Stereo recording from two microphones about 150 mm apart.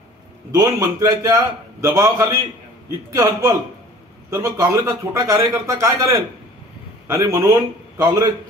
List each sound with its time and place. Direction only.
0.6 s a man's voice: 25° right (ahead or behind)
8.0 s a man's voice: 25° right (ahead or behind)